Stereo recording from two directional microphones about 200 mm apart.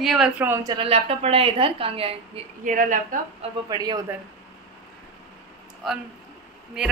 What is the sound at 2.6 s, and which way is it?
Speech, 40° right (ahead or behind).